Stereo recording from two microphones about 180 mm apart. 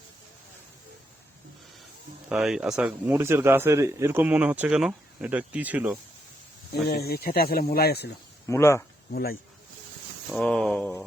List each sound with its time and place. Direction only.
2.3 s speech: 5° right (ahead or behind)
6.8 s speech: 60° left (ahead or behind)
8.4 s speech: 15° left (ahead or behind)
9.1 s speech: 55° left (ahead or behind)
10.3 s a sound: 5° left (ahead or behind)